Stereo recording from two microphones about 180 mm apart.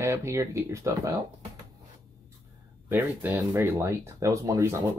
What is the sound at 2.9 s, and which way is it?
Speech, 10° right (ahead or behind).